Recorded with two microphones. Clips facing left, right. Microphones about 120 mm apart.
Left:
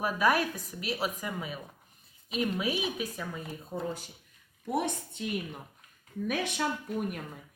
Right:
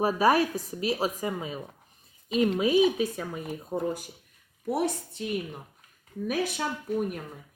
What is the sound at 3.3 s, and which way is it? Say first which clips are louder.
Speech: right 5 dB; 15° right (ahead or behind).